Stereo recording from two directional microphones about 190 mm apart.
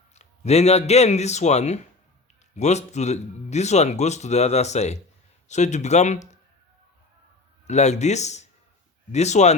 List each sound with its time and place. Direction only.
0.1 s a man's voice: 35° left (ahead or behind)
7.7 s speech: 35° left (ahead or behind)